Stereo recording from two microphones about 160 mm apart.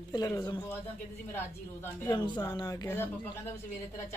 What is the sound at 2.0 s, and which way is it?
Speech, 30° left (ahead or behind).